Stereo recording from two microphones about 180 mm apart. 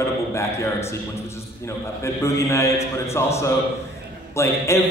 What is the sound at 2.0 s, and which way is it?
A man's voice, 15° left (ahead or behind).